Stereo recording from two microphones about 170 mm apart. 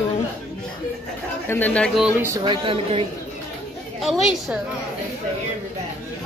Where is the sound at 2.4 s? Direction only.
30° right (ahead or behind).